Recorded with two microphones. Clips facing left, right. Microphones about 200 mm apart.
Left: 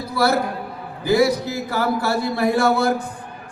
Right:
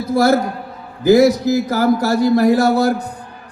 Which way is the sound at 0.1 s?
45° right (ahead or behind).